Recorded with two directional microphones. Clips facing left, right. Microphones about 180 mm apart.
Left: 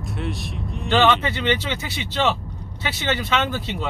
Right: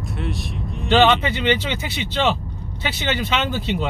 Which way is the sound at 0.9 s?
20° right (ahead or behind).